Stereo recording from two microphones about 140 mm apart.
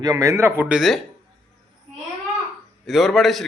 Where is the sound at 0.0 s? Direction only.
25° right (ahead or behind); by 0.9 s 5° right (ahead or behind).